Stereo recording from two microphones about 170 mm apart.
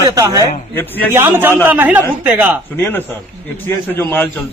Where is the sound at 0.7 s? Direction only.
10° left (ahead or behind).